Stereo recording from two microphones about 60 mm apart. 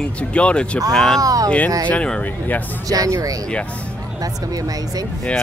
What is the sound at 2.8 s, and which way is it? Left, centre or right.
Speech, right.